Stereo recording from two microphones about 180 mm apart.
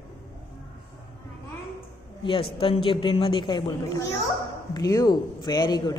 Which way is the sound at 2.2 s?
30° left (ahead or behind).